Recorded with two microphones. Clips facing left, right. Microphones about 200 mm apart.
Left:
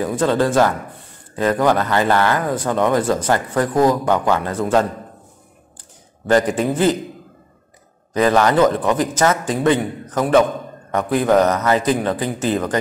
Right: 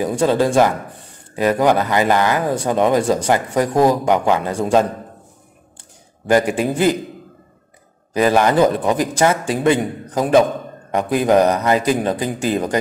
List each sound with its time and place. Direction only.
0.0 s speech: 15° right (ahead or behind)
6.2 s speech: 10° right (ahead or behind)
8.1 s speech: 10° right (ahead or behind)